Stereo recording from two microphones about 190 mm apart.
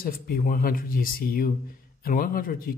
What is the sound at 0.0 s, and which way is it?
Speech, 50° left (ahead or behind).